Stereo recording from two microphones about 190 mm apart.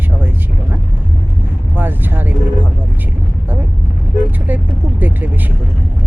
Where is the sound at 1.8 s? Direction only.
10° right (ahead or behind).